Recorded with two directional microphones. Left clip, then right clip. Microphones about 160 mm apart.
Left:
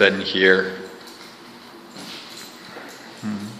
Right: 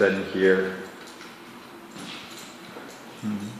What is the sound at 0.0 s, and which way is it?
Speech, 25° left (ahead or behind).